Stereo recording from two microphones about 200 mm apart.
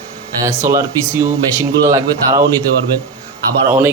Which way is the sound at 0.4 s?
15° right (ahead or behind).